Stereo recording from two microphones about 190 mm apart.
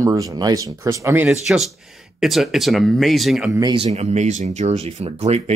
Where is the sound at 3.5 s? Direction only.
25° right (ahead or behind).